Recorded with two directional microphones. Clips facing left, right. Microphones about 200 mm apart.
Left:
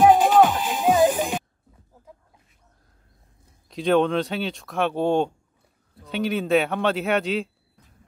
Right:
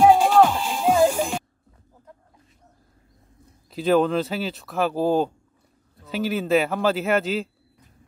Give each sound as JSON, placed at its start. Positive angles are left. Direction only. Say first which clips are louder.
{"t": 0.0, "sound": "music", "louder": "even", "side_deg": 5}
{"t": 3.7, "sound": "speech", "louder": "even", "side_deg": 0}